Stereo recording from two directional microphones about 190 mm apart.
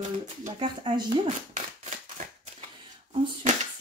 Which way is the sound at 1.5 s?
40° right (ahead or behind).